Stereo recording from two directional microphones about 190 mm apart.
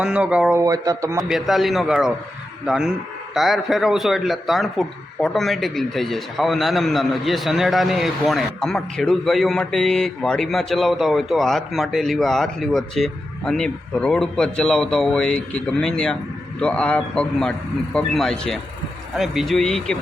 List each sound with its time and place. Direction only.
0.0 s a man's voice: 5° right (ahead or behind)
0.6 s a man's voice: 20° right (ahead or behind)
1.2 s a man's voice: centre (ahead or behind)